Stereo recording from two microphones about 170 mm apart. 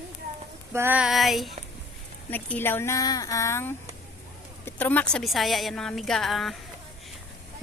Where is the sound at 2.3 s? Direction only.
10° left (ahead or behind).